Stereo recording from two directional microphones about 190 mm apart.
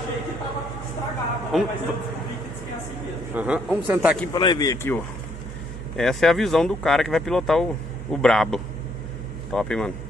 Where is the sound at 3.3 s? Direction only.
5° right (ahead or behind).